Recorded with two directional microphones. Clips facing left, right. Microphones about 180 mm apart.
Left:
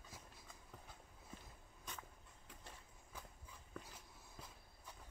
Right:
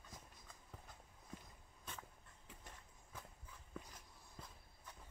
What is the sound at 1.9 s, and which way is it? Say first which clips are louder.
Dog: even; 5° right (ahead or behind).